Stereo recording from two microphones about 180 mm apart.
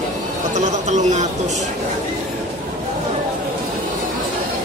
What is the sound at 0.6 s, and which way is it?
Speech, 40° right (ahead or behind).